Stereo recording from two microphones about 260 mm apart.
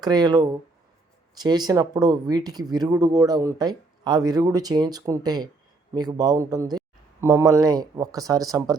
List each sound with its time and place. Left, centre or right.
0.0 s speech: centre